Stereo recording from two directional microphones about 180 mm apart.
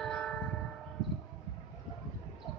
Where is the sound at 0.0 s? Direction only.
5° left (ahead or behind).